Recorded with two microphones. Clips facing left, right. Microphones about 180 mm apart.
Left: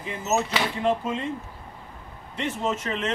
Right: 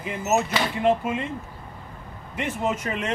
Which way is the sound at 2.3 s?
15° right (ahead or behind).